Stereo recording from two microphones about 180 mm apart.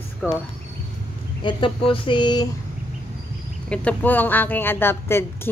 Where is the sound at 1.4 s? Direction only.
25° left (ahead or behind).